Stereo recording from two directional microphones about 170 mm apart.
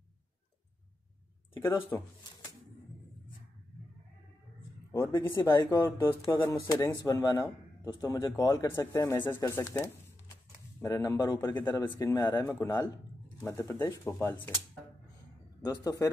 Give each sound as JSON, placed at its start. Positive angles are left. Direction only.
{"t": 1.6, "sound": "speech", "side_deg": 15}
{"t": 4.9, "sound": "a man's voice", "side_deg": 15}
{"t": 15.6, "sound": "a man's voice", "side_deg": 20}